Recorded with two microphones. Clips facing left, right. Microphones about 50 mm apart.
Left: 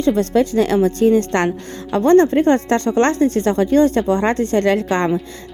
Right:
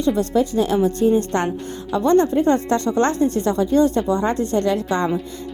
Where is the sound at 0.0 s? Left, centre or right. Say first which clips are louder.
Left 3 dB; left.